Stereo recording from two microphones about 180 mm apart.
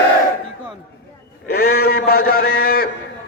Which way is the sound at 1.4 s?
60° left (ahead or behind).